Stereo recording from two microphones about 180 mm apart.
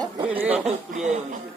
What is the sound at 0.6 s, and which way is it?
Speech, 40° right (ahead or behind).